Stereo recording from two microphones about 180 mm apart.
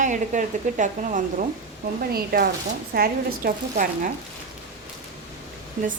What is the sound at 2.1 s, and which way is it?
Speech, 55° right (ahead or behind).